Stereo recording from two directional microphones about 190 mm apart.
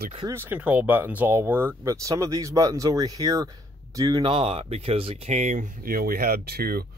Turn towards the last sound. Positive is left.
turn(degrees=-55)  # may be behind; listen again after turning